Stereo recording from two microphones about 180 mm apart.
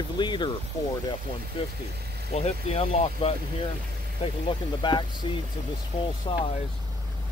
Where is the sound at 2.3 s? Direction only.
35° left (ahead or behind).